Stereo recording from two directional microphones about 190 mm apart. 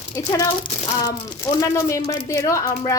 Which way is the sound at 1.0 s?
15° left (ahead or behind).